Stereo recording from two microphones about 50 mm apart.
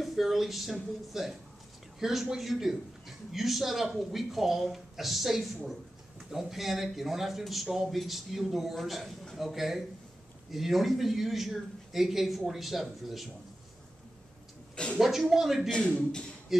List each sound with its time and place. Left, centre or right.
0.0 s a man's voice: centre
15.0 s a man's voice: centre
15.7 s a man's voice: centre